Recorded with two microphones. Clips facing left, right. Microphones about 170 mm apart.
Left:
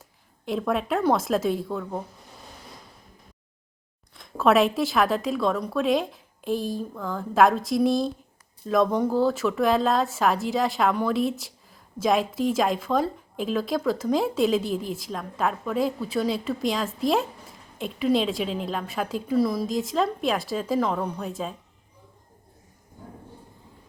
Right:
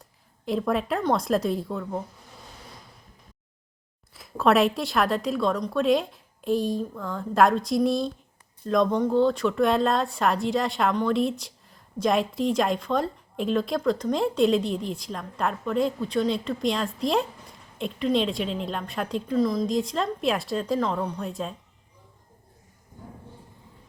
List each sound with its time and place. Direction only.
0.0 s speech: centre (ahead or behind)
4.1 s speech: centre (ahead or behind)